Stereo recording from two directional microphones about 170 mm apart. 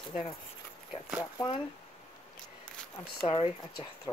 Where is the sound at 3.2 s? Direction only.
25° left (ahead or behind).